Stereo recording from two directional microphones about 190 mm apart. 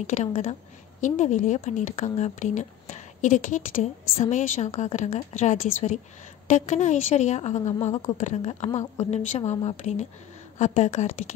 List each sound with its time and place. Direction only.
0.0 s speech: 40° left (ahead or behind)
7.9 s speech: 20° left (ahead or behind)
8.2 s speech: 35° left (ahead or behind)